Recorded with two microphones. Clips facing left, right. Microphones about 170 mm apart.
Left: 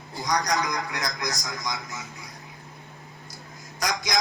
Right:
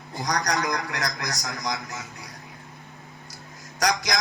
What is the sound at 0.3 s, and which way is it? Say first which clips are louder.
A man's voice: even; 70° right (ahead or behind).